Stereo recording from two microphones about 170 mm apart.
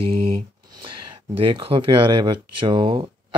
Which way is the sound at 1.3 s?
30° right (ahead or behind).